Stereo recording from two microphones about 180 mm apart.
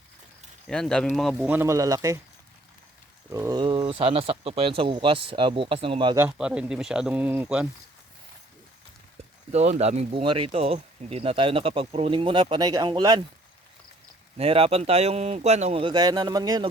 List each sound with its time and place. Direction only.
0.7 s speech: 5° left (ahead or behind)
1.5 s speech: 15° right (ahead or behind)
3.3 s speech: 20° right (ahead or behind)
6.1 s speech: 10° right (ahead or behind)
9.5 s speech: 40° right (ahead or behind)
14.3 s speech: 30° right (ahead or behind)